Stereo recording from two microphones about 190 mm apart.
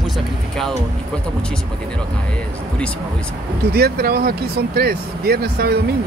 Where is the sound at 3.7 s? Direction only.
55° right (ahead or behind).